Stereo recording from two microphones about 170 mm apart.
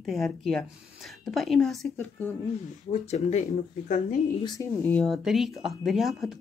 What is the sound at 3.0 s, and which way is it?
Speech, 40° left (ahead or behind).